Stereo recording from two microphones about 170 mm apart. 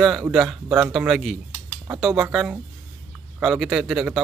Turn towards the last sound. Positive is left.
turn(degrees=0)  # may be behind; listen again after turning